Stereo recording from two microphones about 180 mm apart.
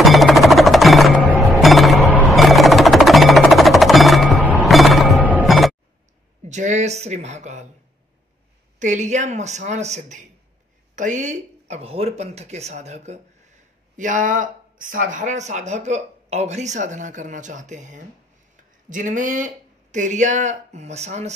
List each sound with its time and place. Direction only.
0.0 s music: centre (ahead or behind)
6.5 s a sound: 40° right (ahead or behind)
8.7 s speech: 40° right (ahead or behind)